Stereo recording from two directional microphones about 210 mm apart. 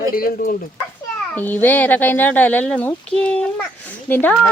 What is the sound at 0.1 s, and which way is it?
Speech, 45° left (ahead or behind).